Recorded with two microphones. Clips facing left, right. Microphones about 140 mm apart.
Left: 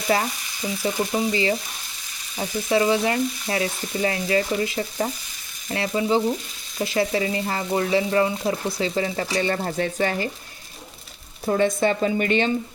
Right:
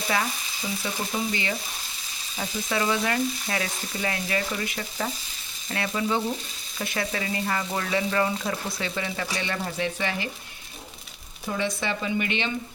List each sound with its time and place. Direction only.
0.8 s frying: 35° left (ahead or behind)
2.4 s speech: 25° left (ahead or behind); by 10.2 s 45° left (ahead or behind)
11.5 s speech: 45° left (ahead or behind)